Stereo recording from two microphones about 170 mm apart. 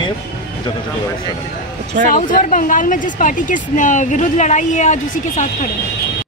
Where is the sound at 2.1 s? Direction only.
50° left (ahead or behind).